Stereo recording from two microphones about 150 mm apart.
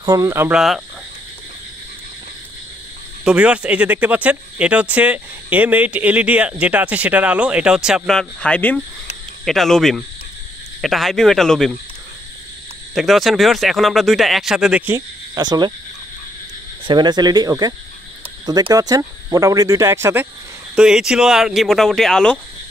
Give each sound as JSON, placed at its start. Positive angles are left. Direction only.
{"t": 0.0, "sound": "speech", "side_deg": -25}
{"t": 0.5, "sound": "speech", "side_deg": -5}
{"t": 3.3, "sound": "speech", "side_deg": -5}
{"t": 12.9, "sound": "speech", "side_deg": 0}
{"t": 15.0, "sound": "cricket", "side_deg": -25}
{"t": 16.8, "sound": "speech", "side_deg": -30}
{"t": 20.7, "sound": "speech", "side_deg": -5}